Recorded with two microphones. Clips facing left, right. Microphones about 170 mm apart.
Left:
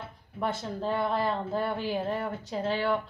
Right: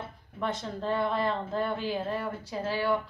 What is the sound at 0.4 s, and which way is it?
Speech, 10° left (ahead or behind).